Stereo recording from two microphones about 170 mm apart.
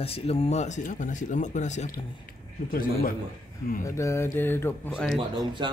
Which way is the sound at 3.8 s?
15° left (ahead or behind).